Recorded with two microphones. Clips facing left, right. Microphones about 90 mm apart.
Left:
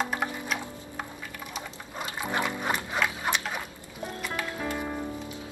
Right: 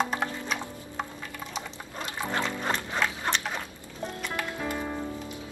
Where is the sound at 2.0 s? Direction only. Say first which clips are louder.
Left 1 dB; 10° left (ahead or behind).